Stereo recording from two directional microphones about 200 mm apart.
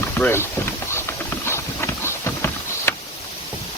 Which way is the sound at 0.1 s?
10° left (ahead or behind).